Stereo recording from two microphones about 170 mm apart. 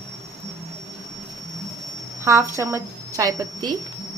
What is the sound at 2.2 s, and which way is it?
A woman's voice, 15° right (ahead or behind).